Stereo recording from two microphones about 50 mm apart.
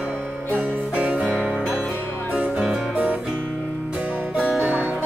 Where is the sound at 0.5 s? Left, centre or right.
Right.